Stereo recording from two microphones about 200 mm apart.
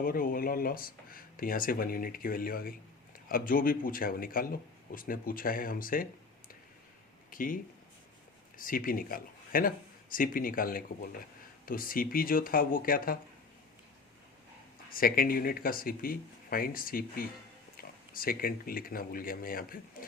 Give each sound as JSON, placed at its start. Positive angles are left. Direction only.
{"t": 0.0, "sound": "speech", "side_deg": 45}
{"t": 7.3, "sound": "speech", "side_deg": 45}
{"t": 14.8, "sound": "speech", "side_deg": 45}